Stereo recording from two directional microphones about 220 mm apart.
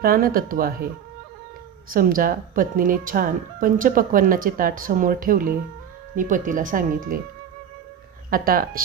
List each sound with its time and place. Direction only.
0.0 s speech: 40° right (ahead or behind)
1.9 s speech: 40° right (ahead or behind)
8.3 s speech: 40° right (ahead or behind)